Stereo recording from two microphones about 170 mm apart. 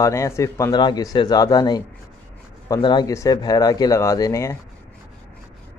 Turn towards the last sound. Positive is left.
turn(degrees=15)  # may be behind; listen again after turning